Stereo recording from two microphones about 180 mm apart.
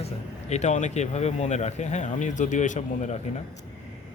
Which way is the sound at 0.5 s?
40° left (ahead or behind).